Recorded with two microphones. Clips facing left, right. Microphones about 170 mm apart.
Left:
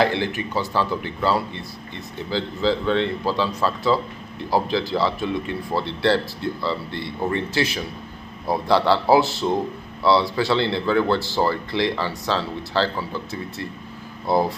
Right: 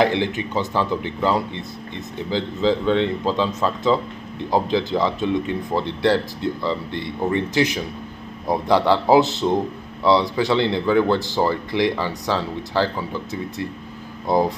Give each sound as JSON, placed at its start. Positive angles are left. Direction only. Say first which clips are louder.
{"t": 0.0, "sound": "speech", "louder": "right 2 dB", "side_deg": -20}